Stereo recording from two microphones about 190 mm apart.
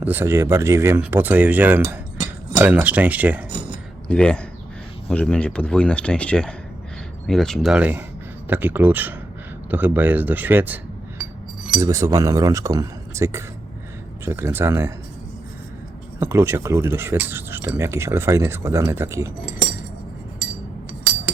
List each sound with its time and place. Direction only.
0.0 s speech: 10° right (ahead or behind)
4.1 s speech: 5° left (ahead or behind)
11.8 s speech: 15° right (ahead or behind)
16.2 s speech: 15° right (ahead or behind)